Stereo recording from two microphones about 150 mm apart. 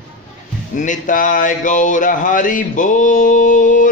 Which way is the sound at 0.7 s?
60° left (ahead or behind).